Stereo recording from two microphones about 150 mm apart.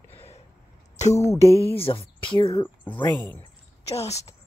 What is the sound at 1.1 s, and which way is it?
Music, 20° left (ahead or behind).